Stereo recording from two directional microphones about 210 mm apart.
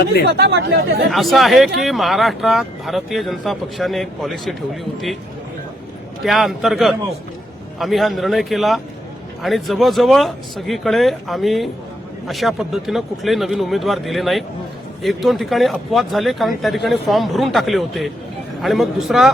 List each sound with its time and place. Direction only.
0.3 s speech: 50° right (ahead or behind)
1.1 s speech: centre (ahead or behind)
6.2 s speech: centre (ahead or behind)